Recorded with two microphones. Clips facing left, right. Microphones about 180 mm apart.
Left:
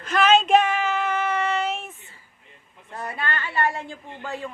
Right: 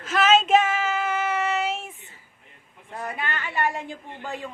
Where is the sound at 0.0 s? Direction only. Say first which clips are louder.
Left 1 dB; 5° right (ahead or behind).